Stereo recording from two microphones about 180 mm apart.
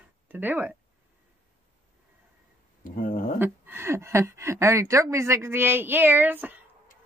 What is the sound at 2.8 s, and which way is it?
Speech, 50° left (ahead or behind).